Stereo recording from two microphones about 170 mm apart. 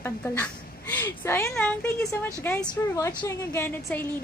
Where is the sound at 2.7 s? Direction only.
25° left (ahead or behind).